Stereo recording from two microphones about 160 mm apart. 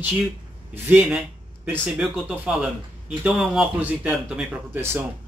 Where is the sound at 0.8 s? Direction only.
10° right (ahead or behind).